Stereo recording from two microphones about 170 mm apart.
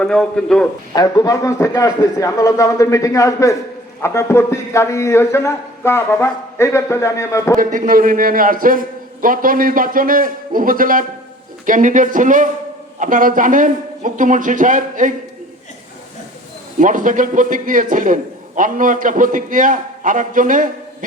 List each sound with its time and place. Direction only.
0.0 s a man's voice: 5° left (ahead or behind)
0.9 s a man's voice: 20° left (ahead or behind)
7.6 s a man's voice: 55° right (ahead or behind)
16.8 s a man's voice: 50° right (ahead or behind)